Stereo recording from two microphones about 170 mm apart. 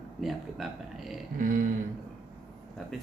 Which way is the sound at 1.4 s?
50° right (ahead or behind).